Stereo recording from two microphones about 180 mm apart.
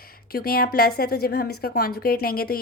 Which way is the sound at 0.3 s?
55° left (ahead or behind).